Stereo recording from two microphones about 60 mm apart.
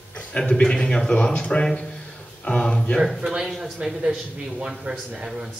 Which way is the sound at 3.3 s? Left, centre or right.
Centre.